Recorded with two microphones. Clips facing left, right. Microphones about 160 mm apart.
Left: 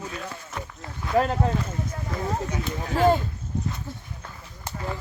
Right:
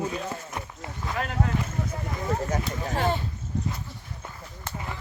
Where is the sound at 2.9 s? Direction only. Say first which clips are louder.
Left 7 dB; 40° left (ahead or behind).